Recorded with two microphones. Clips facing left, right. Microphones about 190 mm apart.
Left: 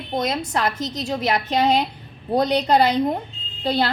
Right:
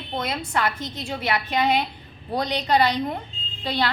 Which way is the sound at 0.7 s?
90° left.